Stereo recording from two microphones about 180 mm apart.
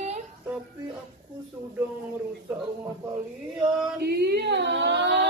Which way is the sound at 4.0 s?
65° right (ahead or behind).